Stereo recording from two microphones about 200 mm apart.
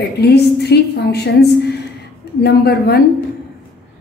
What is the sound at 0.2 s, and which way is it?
A woman's voice, 55° left (ahead or behind).